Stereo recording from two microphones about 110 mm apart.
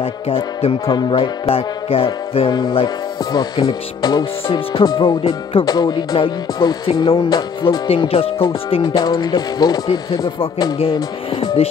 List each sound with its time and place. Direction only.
0.0 s music: 60° left (ahead or behind)
3.3 s speech: 40° left (ahead or behind)
4.2 s music: 55° left (ahead or behind)
4.8 s music: 40° left (ahead or behind)
5.7 s speech: 40° left (ahead or behind)
7.2 s music: 40° left (ahead or behind); by 8.8 s 55° left (ahead or behind)
8.8 s speech: 40° left (ahead or behind)